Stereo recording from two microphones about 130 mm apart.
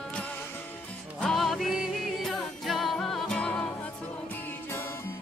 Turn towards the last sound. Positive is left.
turn(degrees=5)  # may be behind; listen again after turning